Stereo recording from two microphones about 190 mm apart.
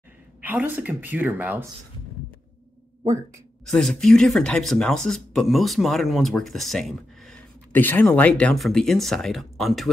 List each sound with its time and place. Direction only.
0.4 s a woman's voice: 10° right (ahead or behind)
3.6 s speech: centre (ahead or behind)